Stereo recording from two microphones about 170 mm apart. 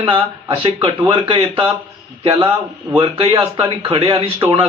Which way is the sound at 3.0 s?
35° right (ahead or behind).